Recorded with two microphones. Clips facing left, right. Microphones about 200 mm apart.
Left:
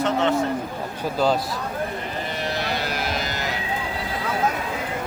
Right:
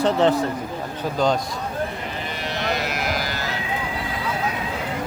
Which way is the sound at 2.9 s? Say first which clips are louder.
Right 1 dB; 25° left (ahead or behind).